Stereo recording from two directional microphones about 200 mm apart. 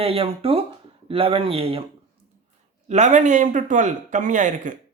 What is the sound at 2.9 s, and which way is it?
A man's voice, 35° right (ahead or behind).